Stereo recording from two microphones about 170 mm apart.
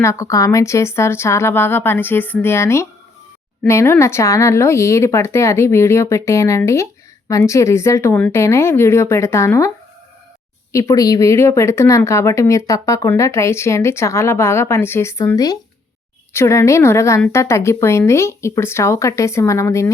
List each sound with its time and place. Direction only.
0.0 s speech: 15° left (ahead or behind)